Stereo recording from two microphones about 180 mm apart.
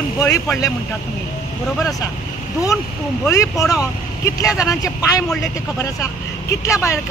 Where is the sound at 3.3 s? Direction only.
20° left (ahead or behind).